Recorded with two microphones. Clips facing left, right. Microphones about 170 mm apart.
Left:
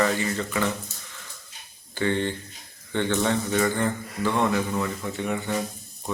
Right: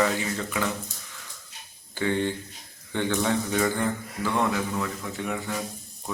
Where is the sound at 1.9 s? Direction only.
10° right (ahead or behind).